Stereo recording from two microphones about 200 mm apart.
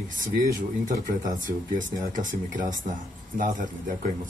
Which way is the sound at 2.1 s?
40° right (ahead or behind).